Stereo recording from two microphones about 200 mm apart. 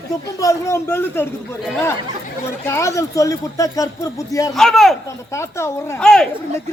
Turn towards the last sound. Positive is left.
turn(degrees=5)  # may be behind; listen again after turning